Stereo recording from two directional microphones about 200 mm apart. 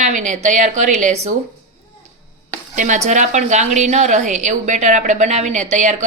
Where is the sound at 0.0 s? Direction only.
40° right (ahead or behind).